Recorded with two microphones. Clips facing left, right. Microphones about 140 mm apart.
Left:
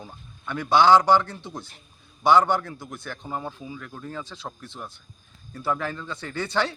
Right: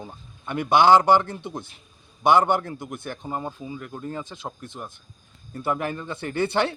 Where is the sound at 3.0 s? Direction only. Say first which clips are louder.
Even; 20° right (ahead or behind).